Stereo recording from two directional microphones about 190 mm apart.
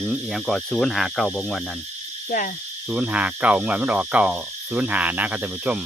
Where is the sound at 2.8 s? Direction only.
5° right (ahead or behind).